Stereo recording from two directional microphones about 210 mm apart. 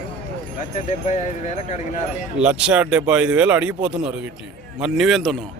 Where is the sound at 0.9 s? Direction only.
35° left (ahead or behind).